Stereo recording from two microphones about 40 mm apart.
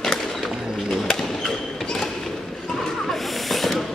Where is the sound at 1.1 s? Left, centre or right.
Centre.